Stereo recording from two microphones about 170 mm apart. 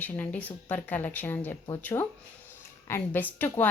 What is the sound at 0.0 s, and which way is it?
A woman's voice, 10° left (ahead or behind).